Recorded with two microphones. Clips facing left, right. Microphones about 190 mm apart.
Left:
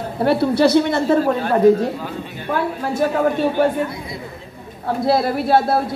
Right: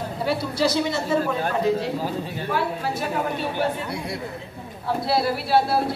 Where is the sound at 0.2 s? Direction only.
60° left (ahead or behind).